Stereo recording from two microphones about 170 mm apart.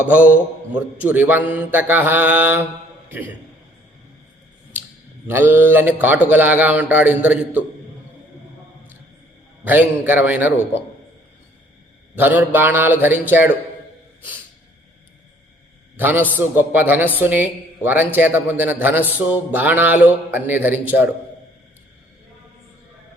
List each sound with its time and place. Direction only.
0.0 s speech: 10° right (ahead or behind)
5.3 s speech: 10° right (ahead or behind)
9.6 s speech: 10° right (ahead or behind)
12.1 s speech: 10° right (ahead or behind)
16.0 s a man's voice: 10° right (ahead or behind)